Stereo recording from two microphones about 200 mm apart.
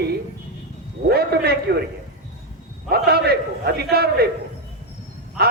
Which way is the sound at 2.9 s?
50° right (ahead or behind).